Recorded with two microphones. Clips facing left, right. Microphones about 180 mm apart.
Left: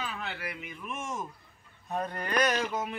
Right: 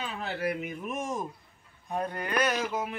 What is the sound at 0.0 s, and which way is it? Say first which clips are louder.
Speech: right 5 dB; 30° right (ahead or behind).